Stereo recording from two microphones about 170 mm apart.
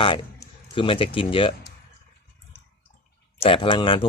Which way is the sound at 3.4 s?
30° left (ahead or behind).